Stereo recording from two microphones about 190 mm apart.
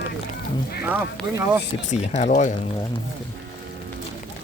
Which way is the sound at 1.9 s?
35° left (ahead or behind).